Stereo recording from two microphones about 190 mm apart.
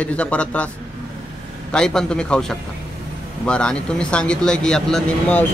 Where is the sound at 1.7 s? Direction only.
5° left (ahead or behind).